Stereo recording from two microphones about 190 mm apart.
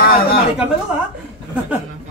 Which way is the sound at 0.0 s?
50° left (ahead or behind).